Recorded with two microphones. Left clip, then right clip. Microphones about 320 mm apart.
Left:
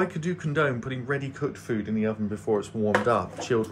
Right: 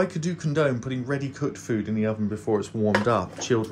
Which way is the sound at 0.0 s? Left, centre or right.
Centre.